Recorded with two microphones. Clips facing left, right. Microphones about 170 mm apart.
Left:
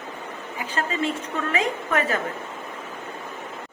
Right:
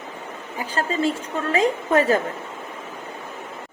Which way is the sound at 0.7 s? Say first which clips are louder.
Right 3 dB; 35° right (ahead or behind).